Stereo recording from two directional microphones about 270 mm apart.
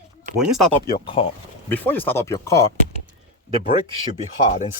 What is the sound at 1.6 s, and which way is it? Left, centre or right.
Speech, centre.